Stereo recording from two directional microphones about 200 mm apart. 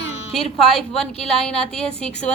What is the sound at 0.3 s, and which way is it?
A woman's voice, centre (ahead or behind).